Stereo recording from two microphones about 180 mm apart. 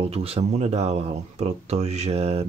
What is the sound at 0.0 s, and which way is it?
Speech, 35° right (ahead or behind).